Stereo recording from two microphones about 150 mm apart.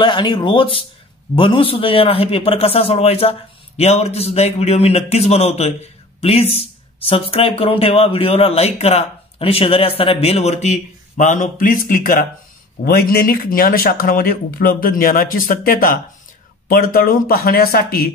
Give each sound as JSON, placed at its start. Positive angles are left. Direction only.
{"t": 0.0, "sound": "speech", "side_deg": 30}
{"t": 12.8, "sound": "speech", "side_deg": 90}